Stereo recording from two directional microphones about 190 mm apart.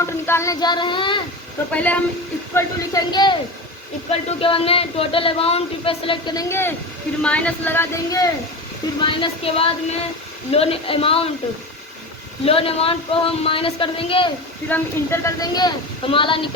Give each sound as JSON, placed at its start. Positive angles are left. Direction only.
{"t": 0.0, "sound": "speech", "side_deg": 15}
{"t": 1.7, "sound": "speech", "side_deg": 5}
{"t": 2.6, "sound": "speech", "side_deg": 20}
{"t": 9.0, "sound": "speech", "side_deg": 30}
{"t": 12.5, "sound": "speech", "side_deg": 30}
{"t": 14.7, "sound": "speech", "side_deg": 15}